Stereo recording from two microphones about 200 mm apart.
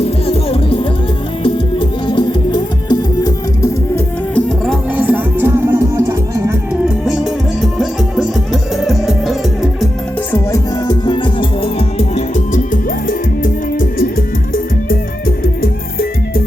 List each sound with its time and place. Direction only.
0.0 s music: 30° left (ahead or behind); by 6.5 s 15° right (ahead or behind)
6.8 s music: 5° right (ahead or behind)
10.3 s music: 20° left (ahead or behind)
12.7 s music: 45° left (ahead or behind)